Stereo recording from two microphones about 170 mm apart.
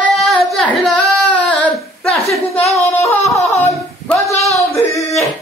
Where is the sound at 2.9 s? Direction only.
15° left (ahead or behind).